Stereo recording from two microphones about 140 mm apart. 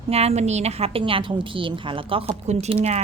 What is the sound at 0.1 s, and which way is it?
A woman's voice, 45° right (ahead or behind).